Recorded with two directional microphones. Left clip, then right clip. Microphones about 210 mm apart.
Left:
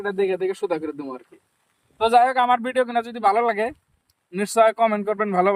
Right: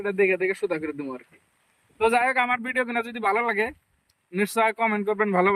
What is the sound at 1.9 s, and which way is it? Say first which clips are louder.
Speech: left 4 dB; 30° left (ahead or behind).